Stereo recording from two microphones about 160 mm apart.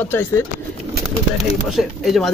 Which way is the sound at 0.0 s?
15° left (ahead or behind).